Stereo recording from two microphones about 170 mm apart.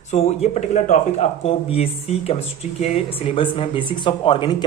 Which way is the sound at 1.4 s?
35° left (ahead or behind).